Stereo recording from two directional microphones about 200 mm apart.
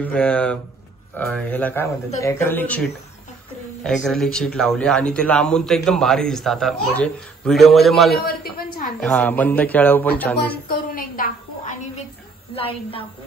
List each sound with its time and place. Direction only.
0.0 s speech: 5° left (ahead or behind)
3.8 s a man's voice: centre (ahead or behind)
8.3 s a sound: 50° left (ahead or behind)
8.8 s speech: 5° left (ahead or behind)
10.9 s a sound: 45° left (ahead or behind)
12.5 s a woman's voice: 30° left (ahead or behind)